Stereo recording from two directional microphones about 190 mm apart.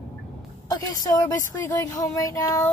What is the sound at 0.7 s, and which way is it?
A woman's voice, 20° left (ahead or behind).